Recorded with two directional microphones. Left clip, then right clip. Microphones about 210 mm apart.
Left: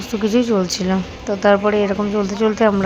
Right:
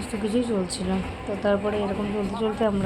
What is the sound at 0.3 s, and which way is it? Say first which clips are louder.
A woman's voice: left 9 dB; 30° left (ahead or behind).